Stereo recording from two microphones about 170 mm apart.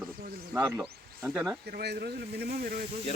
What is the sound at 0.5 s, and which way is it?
Snake, 10° right (ahead or behind).